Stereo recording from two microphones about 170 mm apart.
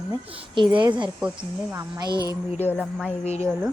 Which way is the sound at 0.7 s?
25° right (ahead or behind).